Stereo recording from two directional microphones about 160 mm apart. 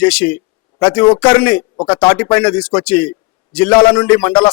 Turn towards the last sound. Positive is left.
turn(degrees=5)  # may be behind; listen again after turning